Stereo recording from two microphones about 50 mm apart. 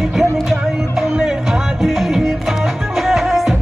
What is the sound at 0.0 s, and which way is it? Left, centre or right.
Music, centre.